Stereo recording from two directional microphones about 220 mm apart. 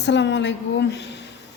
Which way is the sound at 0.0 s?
55° left (ahead or behind).